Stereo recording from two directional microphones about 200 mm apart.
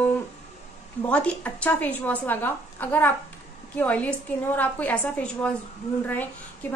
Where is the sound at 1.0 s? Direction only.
5° left (ahead or behind).